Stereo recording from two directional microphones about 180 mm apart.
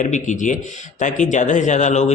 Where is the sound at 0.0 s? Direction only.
45° left (ahead or behind).